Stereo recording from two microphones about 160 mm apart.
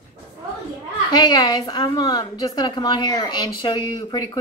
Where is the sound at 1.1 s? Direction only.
25° left (ahead or behind).